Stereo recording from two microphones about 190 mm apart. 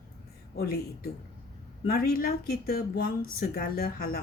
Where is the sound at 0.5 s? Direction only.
55° left (ahead or behind).